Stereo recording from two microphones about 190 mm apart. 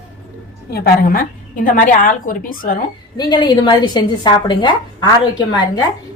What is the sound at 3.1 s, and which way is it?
A woman's voice, 20° left (ahead or behind).